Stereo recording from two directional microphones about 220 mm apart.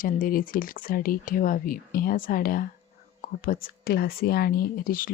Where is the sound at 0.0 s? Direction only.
40° left (ahead or behind).